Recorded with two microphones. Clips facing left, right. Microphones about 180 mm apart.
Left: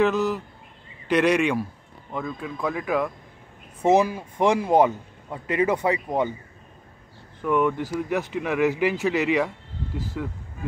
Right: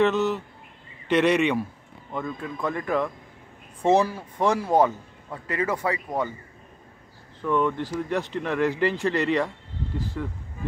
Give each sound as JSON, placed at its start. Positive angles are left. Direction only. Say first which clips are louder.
{"t": 0.0, "sound": "speech", "louder": "even", "side_deg": 0}
{"t": 7.4, "sound": "speech", "louder": "left 2 dB", "side_deg": 10}